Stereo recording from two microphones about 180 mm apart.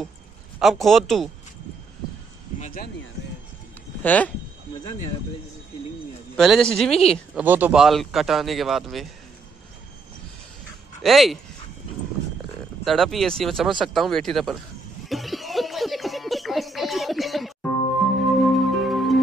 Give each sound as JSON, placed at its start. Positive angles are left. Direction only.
{"t": 0.6, "sound": "speech", "side_deg": 0}
{"t": 2.6, "sound": "a sound", "side_deg": 50}
{"t": 4.0, "sound": "speech", "side_deg": 10}
{"t": 6.3, "sound": "speech", "side_deg": 0}
{"t": 7.3, "sound": "speech", "side_deg": -10}
{"t": 11.0, "sound": "speech", "side_deg": 0}
{"t": 12.8, "sound": "speech", "side_deg": 0}
{"t": 15.0, "sound": "a sound", "side_deg": 0}
{"t": 18.2, "sound": "music", "side_deg": 0}